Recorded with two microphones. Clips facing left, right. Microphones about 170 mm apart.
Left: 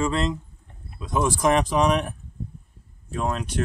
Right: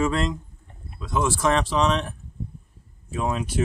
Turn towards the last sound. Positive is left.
turn(degrees=-5)  # may be behind; listen again after turning